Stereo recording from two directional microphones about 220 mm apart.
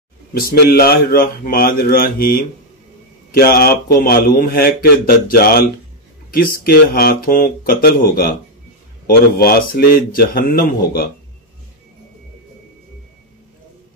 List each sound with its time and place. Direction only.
0.3 s speech: 45° left (ahead or behind)